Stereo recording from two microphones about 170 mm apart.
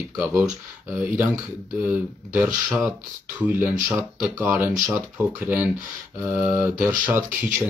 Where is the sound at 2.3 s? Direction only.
10° right (ahead or behind).